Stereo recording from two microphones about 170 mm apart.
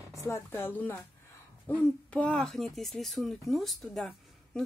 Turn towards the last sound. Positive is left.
turn(degrees=0)  # may be behind; listen again after turning